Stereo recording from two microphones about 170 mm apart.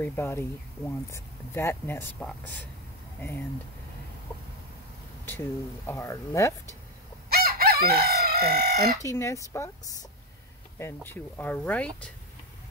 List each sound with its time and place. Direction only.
0.0 s speech: 15° left (ahead or behind)
5.2 s speech: 15° left (ahead or behind)
7.2 s chicken: 65° right (ahead or behind)
9.0 s speech: 15° left (ahead or behind)